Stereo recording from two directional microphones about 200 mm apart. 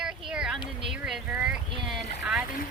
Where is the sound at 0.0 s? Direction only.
5° right (ahead or behind).